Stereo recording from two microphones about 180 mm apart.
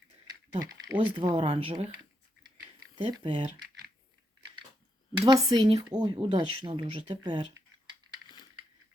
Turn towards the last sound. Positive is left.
turn(degrees=-25)  # may be behind; listen again after turning